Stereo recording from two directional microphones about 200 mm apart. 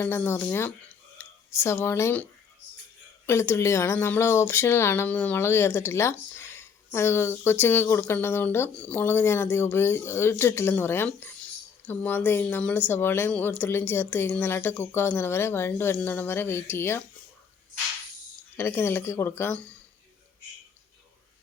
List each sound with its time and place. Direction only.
0.0 s speech: 10° left (ahead or behind)
3.2 s speech: 15° left (ahead or behind)
18.5 s speech: 10° left (ahead or behind)